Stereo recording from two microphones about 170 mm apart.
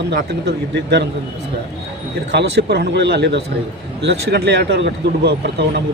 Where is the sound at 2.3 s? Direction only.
80° right.